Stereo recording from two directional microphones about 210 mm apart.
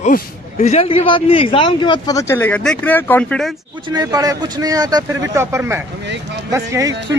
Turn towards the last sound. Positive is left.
turn(degrees=-15)  # may be behind; listen again after turning